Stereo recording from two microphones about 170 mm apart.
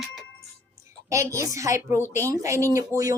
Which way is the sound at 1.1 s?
20° right (ahead or behind).